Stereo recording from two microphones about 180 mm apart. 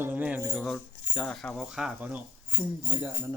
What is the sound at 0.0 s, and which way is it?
Keys jangling, 10° right (ahead or behind).